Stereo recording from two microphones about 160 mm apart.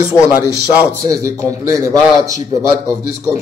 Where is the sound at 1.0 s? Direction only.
20° right (ahead or behind).